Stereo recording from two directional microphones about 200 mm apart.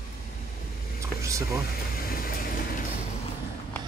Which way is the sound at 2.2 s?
45° left (ahead or behind).